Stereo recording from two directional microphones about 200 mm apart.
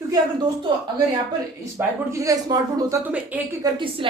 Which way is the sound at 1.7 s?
15° right (ahead or behind).